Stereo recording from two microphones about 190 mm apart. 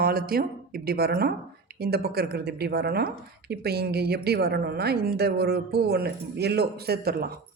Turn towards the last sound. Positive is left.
turn(degrees=-55)  # may be behind; listen again after turning